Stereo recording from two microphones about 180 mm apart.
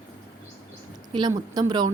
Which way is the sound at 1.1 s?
20° right (ahead or behind).